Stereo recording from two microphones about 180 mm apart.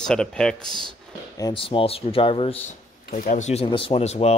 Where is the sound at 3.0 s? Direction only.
50° left (ahead or behind).